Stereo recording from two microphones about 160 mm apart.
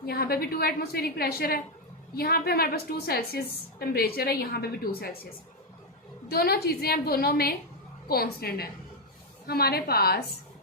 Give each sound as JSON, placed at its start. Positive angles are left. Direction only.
{"t": 0.0, "sound": "a woman's voice", "side_deg": 70}
{"t": 6.2, "sound": "a woman's voice", "side_deg": 75}